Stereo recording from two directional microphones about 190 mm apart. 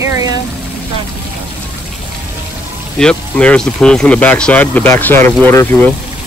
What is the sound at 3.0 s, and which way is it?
Speech, 5° left (ahead or behind).